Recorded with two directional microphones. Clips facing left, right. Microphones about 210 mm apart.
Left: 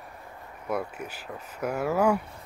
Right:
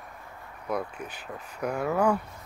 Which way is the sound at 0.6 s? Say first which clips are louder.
Left 1 dB; 10° left (ahead or behind).